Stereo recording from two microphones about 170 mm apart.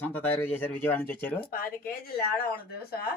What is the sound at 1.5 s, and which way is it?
Speech, 55° left (ahead or behind).